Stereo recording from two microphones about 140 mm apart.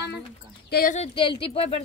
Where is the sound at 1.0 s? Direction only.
40° left (ahead or behind).